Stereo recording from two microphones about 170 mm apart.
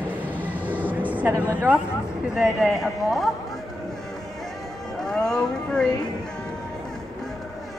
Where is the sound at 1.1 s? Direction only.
10° right (ahead or behind).